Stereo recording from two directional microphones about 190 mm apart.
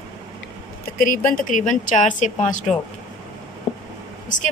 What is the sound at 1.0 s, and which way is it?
Speech, 45° left (ahead or behind).